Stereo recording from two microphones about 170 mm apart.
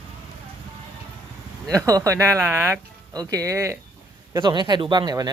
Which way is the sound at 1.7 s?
20° right (ahead or behind).